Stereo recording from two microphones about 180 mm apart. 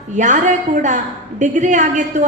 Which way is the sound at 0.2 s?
45° right (ahead or behind).